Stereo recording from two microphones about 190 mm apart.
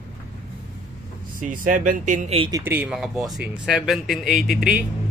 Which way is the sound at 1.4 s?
45° right (ahead or behind).